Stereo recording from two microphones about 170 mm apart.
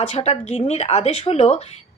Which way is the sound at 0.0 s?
40° left (ahead or behind).